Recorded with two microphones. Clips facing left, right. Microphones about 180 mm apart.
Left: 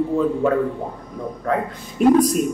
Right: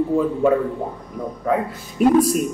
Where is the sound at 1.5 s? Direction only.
5° right (ahead or behind).